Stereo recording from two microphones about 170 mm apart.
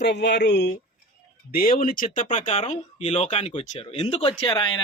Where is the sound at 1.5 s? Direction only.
60° left (ahead or behind).